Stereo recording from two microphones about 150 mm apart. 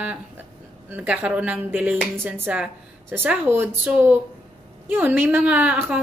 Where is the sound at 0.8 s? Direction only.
10° right (ahead or behind).